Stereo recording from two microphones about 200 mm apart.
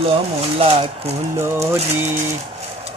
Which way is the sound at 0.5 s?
30° right (ahead or behind).